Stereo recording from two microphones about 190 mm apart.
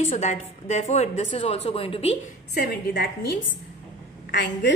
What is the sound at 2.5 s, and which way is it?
Speech, 55° left (ahead or behind).